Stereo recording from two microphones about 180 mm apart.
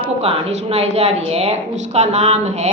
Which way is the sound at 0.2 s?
35° right (ahead or behind).